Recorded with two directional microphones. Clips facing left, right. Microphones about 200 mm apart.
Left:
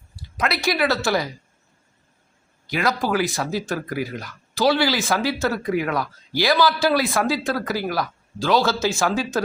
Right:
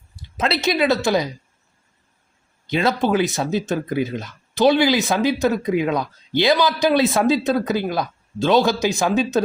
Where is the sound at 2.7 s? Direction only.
25° right (ahead or behind).